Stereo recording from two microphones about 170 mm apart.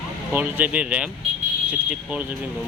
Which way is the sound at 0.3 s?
10° right (ahead or behind).